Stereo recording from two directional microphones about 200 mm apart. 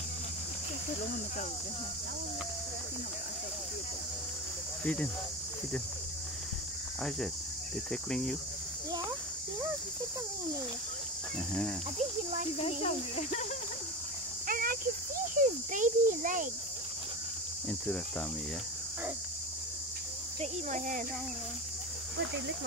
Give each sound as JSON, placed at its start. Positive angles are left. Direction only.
{"t": 4.8, "sound": "cricket", "side_deg": 5}
{"t": 7.9, "sound": "cricket", "side_deg": 5}
{"t": 12.6, "sound": "speech", "side_deg": 30}
{"t": 14.5, "sound": "cricket", "side_deg": -45}
{"t": 15.3, "sound": "a child's voice", "side_deg": -40}
{"t": 17.6, "sound": "cricket", "side_deg": 5}
{"t": 20.3, "sound": "a child's voice", "side_deg": -40}